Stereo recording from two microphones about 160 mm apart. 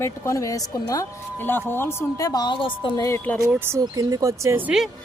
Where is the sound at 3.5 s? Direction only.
15° right (ahead or behind).